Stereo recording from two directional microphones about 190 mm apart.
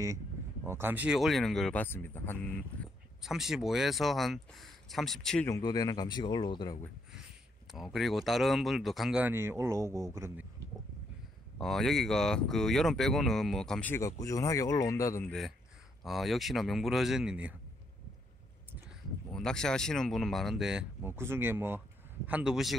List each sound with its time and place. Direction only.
0.7 s speech: 10° right (ahead or behind); by 2.5 s 10° left (ahead or behind)
3.2 s speech: centre (ahead or behind)
5.5 s speech: 20° left (ahead or behind)
7.7 s speech: centre (ahead or behind)
11.5 s speech: centre (ahead or behind)
16.0 s speech: centre (ahead or behind)
19.3 s speech: 5° left (ahead or behind)